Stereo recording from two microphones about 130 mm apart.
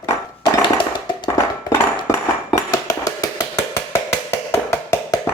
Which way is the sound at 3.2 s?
25° left (ahead or behind).